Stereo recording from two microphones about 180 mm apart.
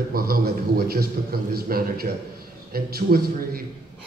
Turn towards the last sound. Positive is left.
turn(degrees=-55)  # may be behind; listen again after turning